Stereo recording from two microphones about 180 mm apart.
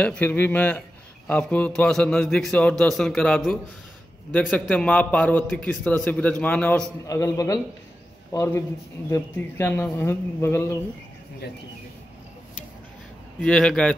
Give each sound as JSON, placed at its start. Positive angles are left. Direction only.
{"t": 0.0, "sound": "a man's voice", "side_deg": 10}
{"t": 13.4, "sound": "a man's voice", "side_deg": 5}